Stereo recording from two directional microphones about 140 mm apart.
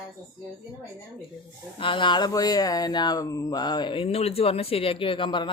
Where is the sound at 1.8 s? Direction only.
35° left (ahead or behind).